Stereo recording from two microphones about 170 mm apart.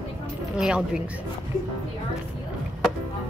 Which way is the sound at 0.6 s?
5° right (ahead or behind).